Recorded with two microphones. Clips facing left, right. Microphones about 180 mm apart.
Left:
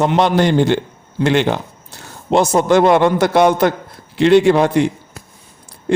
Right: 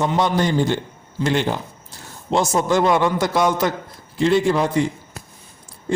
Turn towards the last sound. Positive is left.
turn(degrees=70)  # may be behind; listen again after turning